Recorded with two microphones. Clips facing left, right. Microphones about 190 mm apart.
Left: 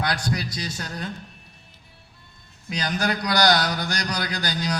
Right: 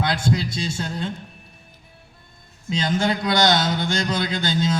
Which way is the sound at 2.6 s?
25° right (ahead or behind).